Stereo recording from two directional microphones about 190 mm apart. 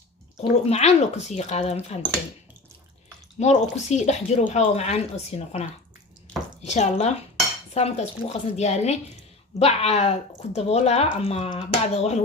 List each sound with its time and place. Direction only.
0.7 s speech: 35° left (ahead or behind)
3.3 s speech: 35° left (ahead or behind)